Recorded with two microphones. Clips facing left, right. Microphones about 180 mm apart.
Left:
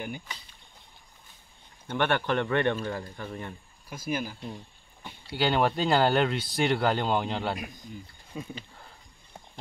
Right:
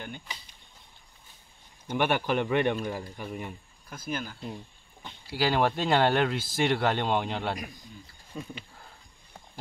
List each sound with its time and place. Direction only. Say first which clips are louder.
1.9 s speech: even; 10° right (ahead or behind)
3.9 s speech: left 3 dB; 10° left (ahead or behind)
5.3 s speech: even; centre (ahead or behind)